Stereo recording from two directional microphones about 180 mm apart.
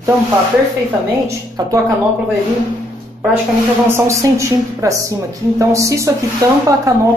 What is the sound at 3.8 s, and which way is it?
Speech, 15° right (ahead or behind).